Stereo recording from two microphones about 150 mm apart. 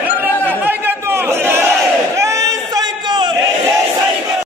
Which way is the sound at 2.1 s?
20° right (ahead or behind).